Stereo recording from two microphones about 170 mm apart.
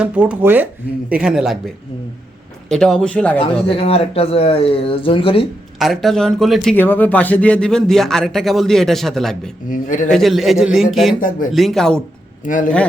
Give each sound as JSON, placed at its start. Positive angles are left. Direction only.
{"t": 0.0, "sound": "speech", "side_deg": -5}
{"t": 2.6, "sound": "speech", "side_deg": 0}
{"t": 3.4, "sound": "speech", "side_deg": 35}
{"t": 5.8, "sound": "speech", "side_deg": 0}
{"t": 6.7, "sound": "speech", "side_deg": 10}
{"t": 9.6, "sound": "speech", "side_deg": 50}
{"t": 10.1, "sound": "speech", "side_deg": 0}
{"t": 12.5, "sound": "speech", "side_deg": 50}